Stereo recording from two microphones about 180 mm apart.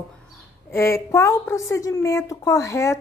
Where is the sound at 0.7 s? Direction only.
15° left (ahead or behind).